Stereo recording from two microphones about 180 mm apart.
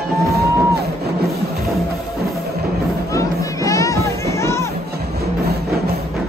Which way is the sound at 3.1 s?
20° left (ahead or behind).